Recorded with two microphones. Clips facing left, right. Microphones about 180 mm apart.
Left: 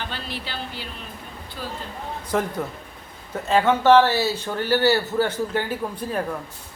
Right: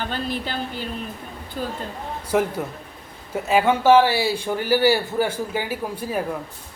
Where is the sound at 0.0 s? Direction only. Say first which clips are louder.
Right 6 dB; 45° right (ahead or behind).